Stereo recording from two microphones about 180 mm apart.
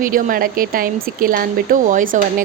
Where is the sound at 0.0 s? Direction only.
50° right (ahead or behind).